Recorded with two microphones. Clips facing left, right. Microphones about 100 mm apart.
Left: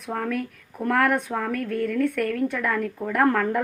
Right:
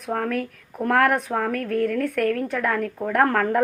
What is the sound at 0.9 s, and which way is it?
Speech, 50° right (ahead or behind).